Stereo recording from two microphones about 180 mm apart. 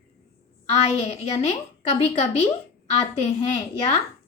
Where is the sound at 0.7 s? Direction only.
35° left (ahead or behind).